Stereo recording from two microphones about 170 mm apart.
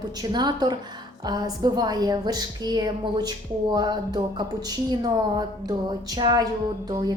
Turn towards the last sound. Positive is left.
turn(degrees=-25)  # may be behind; listen again after turning